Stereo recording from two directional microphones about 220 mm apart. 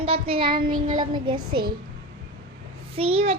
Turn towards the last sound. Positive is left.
turn(degrees=-25)  # may be behind; listen again after turning